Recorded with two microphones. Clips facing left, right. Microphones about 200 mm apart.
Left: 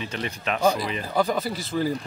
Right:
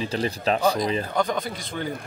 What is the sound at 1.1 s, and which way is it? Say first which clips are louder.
Speech: left 1 dB; 5° left (ahead or behind).